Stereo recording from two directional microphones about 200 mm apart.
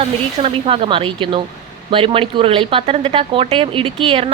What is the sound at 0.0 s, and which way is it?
Speech, 30° right (ahead or behind).